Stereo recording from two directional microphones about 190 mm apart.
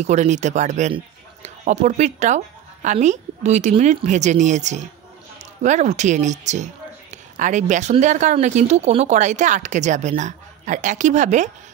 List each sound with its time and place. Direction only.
0.0 s speech: 40° right (ahead or behind)